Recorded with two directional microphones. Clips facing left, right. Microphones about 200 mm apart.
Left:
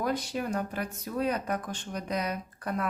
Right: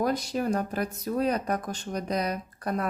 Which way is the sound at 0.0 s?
40° right (ahead or behind).